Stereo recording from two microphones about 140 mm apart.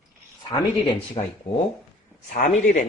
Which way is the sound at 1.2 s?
50° left (ahead or behind).